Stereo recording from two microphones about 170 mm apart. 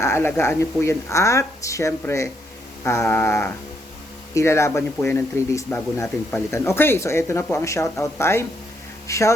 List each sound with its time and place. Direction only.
0.0 s speech: 15° left (ahead or behind)